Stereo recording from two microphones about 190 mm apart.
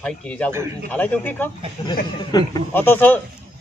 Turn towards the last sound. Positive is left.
turn(degrees=10)  # may be behind; listen again after turning